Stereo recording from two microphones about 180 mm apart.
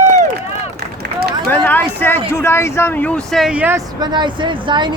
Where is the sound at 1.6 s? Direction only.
10° left (ahead or behind); by 3.8 s 10° right (ahead or behind).